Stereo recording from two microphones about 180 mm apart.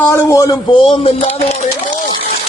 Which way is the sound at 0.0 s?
15° left (ahead or behind).